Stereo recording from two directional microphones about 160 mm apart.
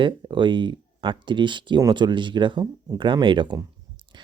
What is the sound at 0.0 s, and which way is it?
Speech, 30° right (ahead or behind).